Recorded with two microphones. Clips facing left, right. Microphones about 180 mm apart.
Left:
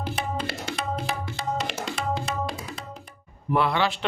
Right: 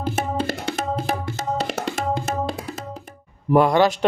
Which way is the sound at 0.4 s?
50° right (ahead or behind).